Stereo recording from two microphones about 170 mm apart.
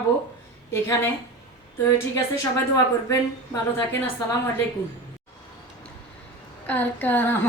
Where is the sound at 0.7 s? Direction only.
15° left (ahead or behind).